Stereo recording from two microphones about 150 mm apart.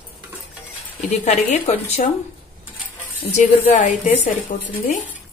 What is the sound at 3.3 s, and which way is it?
A woman's voice, 55° left (ahead or behind).